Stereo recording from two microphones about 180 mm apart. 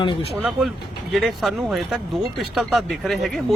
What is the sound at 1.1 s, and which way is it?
Speech, centre (ahead or behind).